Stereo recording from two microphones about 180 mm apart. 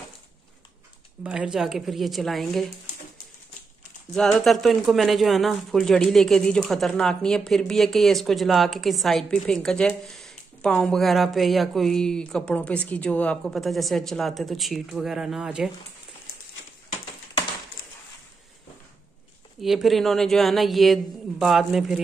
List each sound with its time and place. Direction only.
1.2 s speech: 5° right (ahead or behind)
4.1 s speech: centre (ahead or behind)
19.6 s speech: centre (ahead or behind)